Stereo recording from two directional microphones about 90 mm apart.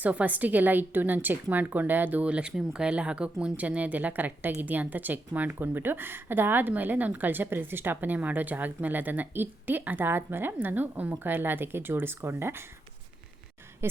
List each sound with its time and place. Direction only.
0.0 s a woman's voice: 15° right (ahead or behind)